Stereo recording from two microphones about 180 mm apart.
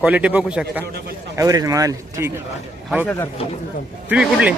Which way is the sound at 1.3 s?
20° right (ahead or behind).